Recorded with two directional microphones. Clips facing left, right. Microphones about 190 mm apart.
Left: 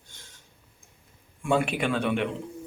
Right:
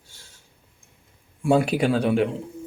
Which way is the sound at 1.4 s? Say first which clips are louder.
Right 5 dB; 35° right (ahead or behind).